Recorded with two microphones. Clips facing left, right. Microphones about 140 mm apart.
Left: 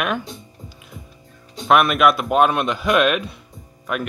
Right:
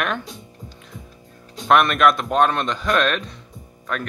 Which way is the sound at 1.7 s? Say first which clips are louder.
Left 1 dB; 5° left (ahead or behind).